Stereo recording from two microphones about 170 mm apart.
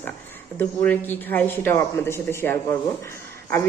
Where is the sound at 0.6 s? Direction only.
10° left (ahead or behind).